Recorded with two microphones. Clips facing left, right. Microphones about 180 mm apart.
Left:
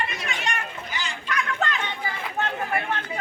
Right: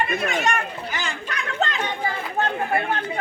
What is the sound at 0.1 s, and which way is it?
Chatter, 50° right (ahead or behind).